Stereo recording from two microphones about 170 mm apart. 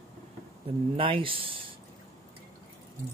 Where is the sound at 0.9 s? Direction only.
30° right (ahead or behind).